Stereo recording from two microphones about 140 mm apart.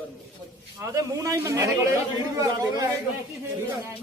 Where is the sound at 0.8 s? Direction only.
25° right (ahead or behind).